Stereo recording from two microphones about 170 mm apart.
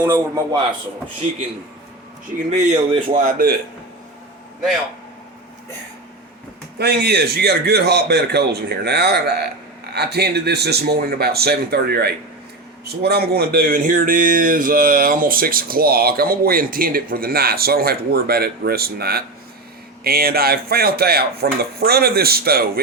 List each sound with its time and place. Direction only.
0.0 s a man's voice: 15° right (ahead or behind)
2.5 s a man's voice: 35° right (ahead or behind)
3.2 s speech: 60° right (ahead or behind)
6.7 s a man's voice: 70° right (ahead or behind)